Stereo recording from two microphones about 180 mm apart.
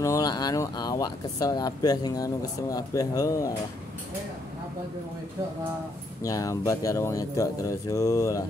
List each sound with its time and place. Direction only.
0.0 s speech: 20° left (ahead or behind)
6.2 s speech: 20° left (ahead or behind)